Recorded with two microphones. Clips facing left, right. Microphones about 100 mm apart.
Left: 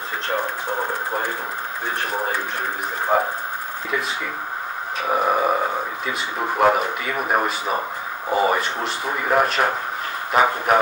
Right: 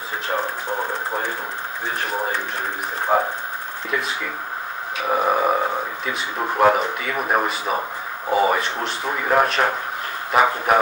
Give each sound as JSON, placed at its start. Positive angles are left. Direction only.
{"t": 3.1, "sound": "speech", "side_deg": 0}
{"t": 5.0, "sound": "speech", "side_deg": 0}